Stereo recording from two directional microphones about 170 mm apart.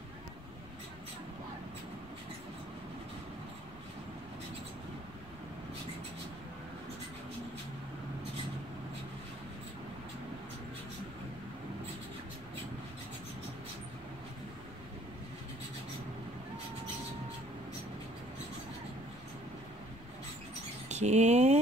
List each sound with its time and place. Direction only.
20.9 s speech: 40° right (ahead or behind)